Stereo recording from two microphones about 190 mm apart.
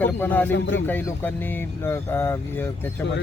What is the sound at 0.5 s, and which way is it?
Speech, 75° left (ahead or behind).